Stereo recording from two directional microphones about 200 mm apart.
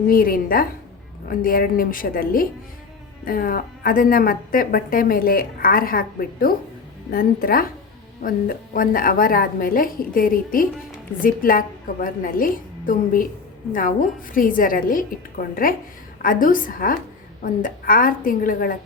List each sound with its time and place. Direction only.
0.1 s a woman's voice: 45° left (ahead or behind)